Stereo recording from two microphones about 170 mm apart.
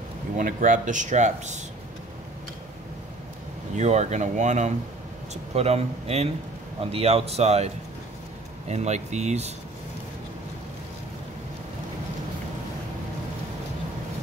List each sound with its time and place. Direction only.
0.4 s speech: 50° right (ahead or behind)
3.7 s speech: 40° right (ahead or behind)